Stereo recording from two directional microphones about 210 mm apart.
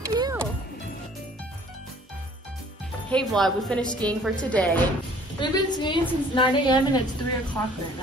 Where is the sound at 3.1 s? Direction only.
5° left (ahead or behind).